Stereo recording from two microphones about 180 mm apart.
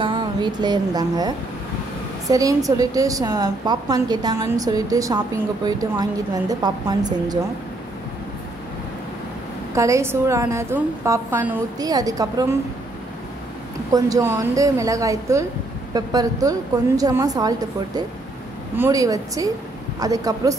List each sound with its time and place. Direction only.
0.0 s a sound: 25° right (ahead or behind)
2.2 s a woman's voice: 20° right (ahead or behind)
9.8 s a woman's voice: 15° right (ahead or behind)
13.9 s a woman's voice: 20° right (ahead or behind)